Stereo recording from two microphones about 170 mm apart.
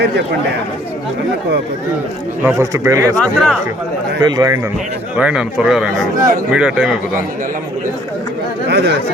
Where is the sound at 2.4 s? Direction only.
15° right (ahead or behind).